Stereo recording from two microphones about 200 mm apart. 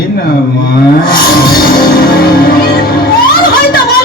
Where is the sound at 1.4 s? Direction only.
50° left (ahead or behind).